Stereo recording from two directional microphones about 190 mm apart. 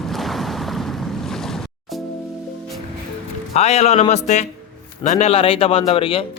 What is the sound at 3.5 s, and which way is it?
Speech, 35° left (ahead or behind).